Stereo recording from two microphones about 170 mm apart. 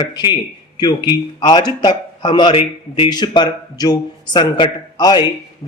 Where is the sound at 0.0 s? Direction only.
25° left (ahead or behind).